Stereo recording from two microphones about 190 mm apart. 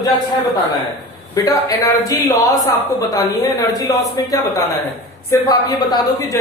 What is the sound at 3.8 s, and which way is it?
A woman's voice, 20° left (ahead or behind).